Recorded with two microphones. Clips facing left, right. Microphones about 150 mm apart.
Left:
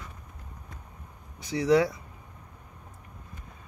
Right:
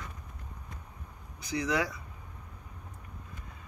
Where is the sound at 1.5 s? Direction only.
30° left (ahead or behind).